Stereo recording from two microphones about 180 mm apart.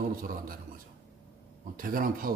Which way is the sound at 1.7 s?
50° right (ahead or behind).